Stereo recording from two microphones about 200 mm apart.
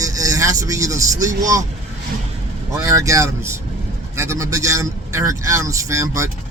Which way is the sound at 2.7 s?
15° right (ahead or behind).